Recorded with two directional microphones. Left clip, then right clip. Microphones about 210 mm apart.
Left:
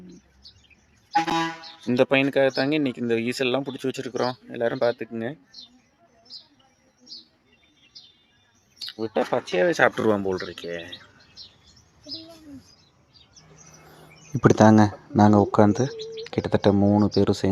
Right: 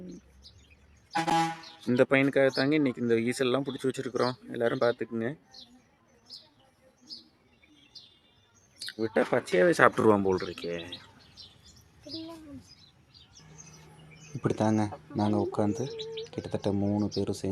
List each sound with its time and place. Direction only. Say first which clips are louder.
1.9 s speech: left 4 dB; 10° left (ahead or behind)
8.8 s speech: left 2 dB; 5° left (ahead or behind)
14.4 s speech: left 12 dB; 35° left (ahead or behind)